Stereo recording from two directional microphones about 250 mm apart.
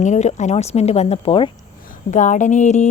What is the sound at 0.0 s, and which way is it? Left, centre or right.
A woman's voice, left.